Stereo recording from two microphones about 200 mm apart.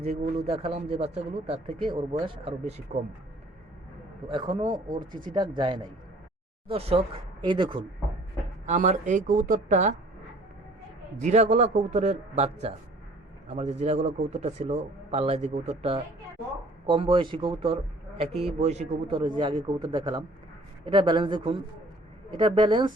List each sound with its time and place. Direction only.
0.2 s a man's voice: 30° right (ahead or behind)
4.3 s speech: 25° right (ahead or behind)
4.9 s speech: 45° right (ahead or behind)
5.3 s speech: 20° right (ahead or behind)
8.6 s a man's voice: 35° right (ahead or behind)
11.2 s a man's voice: 35° right (ahead or behind)